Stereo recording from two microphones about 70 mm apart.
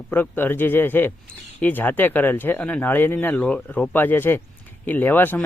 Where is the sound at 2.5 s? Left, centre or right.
Centre.